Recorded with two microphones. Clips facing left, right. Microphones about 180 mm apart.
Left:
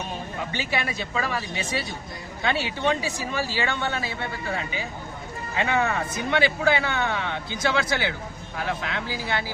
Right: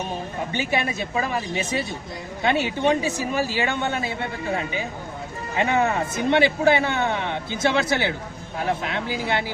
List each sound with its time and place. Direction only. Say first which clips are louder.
0.5 s speech: right 4 dB; 20° right (ahead or behind)